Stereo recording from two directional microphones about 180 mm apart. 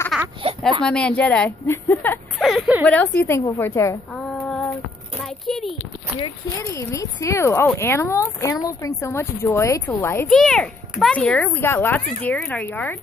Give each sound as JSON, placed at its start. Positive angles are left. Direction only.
{"t": 0.1, "sound": "a sound", "side_deg": -5}
{"t": 0.8, "sound": "a child's voice", "side_deg": 5}
{"t": 2.3, "sound": "speech", "side_deg": 0}
{"t": 2.9, "sound": "a child's voice", "side_deg": 10}
{"t": 4.1, "sound": "female singing", "side_deg": 5}
{"t": 5.2, "sound": "a child's voice", "side_deg": 0}
{"t": 6.6, "sound": "a child's voice", "side_deg": 15}
{"t": 10.2, "sound": "a child's voice", "side_deg": 0}